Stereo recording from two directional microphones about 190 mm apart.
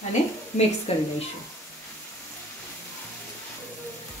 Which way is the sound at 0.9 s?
35° left (ahead or behind).